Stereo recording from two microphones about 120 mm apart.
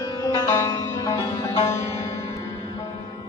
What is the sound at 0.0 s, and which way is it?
Sitar, 30° left (ahead or behind).